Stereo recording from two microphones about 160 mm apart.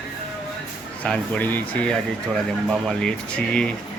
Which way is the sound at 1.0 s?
5° left (ahead or behind).